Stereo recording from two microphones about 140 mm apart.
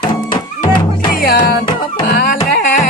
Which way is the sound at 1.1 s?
85° left.